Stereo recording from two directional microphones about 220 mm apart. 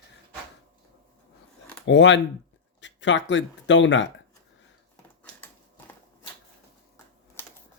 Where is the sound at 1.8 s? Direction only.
55° left (ahead or behind).